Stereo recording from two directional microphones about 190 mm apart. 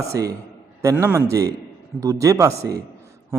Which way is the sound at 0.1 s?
15° right (ahead or behind).